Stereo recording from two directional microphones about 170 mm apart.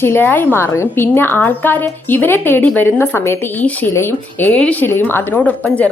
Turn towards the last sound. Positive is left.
turn(degrees=10)  # may be behind; listen again after turning